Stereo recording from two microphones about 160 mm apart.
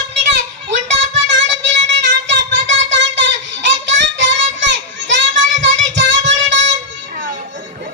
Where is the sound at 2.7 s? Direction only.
90° right.